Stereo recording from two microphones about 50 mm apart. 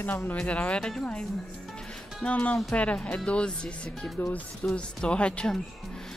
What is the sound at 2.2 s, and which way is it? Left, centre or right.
Speech, left.